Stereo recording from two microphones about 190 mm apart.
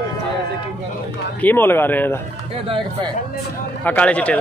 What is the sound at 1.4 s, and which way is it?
Speech, 10° left (ahead or behind).